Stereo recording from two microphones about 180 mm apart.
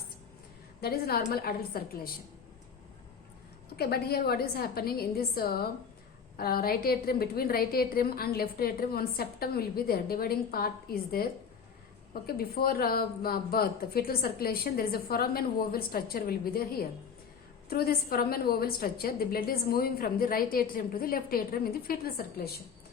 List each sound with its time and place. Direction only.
0.8 s a woman's voice: 60° left (ahead or behind)
3.8 s a woman's voice: 60° left (ahead or behind)